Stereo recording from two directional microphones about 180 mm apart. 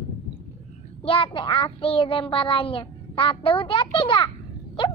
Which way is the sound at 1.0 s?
30° left (ahead or behind).